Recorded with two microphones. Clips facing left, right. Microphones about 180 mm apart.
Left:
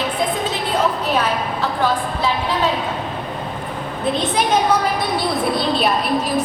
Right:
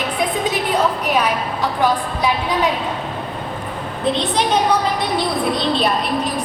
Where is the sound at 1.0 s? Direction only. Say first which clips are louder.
Right 1 dB; 15° right (ahead or behind).